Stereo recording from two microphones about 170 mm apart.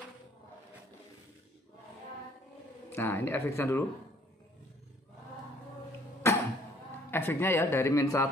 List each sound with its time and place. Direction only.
2.9 s a man's voice: 10° left (ahead or behind)
6.2 s a sound: 15° left (ahead or behind)
7.1 s a man's voice: 15° left (ahead or behind)